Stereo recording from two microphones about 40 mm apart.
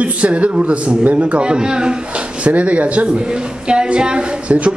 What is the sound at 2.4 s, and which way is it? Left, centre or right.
Speech, right.